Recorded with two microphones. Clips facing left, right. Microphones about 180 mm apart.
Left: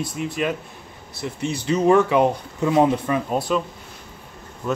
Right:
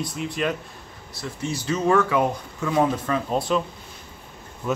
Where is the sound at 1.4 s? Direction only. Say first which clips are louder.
Left 2 dB; 60° left (ahead or behind).